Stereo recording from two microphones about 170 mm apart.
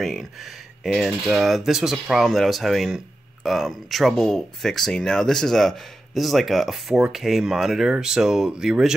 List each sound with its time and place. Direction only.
0.0 s speech: centre (ahead or behind)